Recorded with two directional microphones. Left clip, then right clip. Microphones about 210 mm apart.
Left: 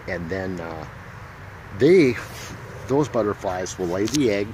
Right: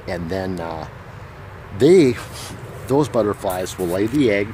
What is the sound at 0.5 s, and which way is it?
Speech, 20° right (ahead or behind).